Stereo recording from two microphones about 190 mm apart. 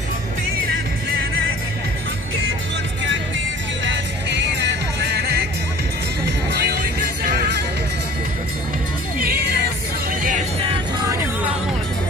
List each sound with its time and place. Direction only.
3.8 s music: 70° right (ahead or behind)
9.2 s music: 55° right (ahead or behind)
10.6 s music: 25° right (ahead or behind)